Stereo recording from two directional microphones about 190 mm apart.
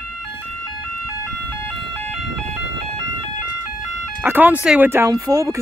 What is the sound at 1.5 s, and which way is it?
Vehicle, 10° left (ahead or behind).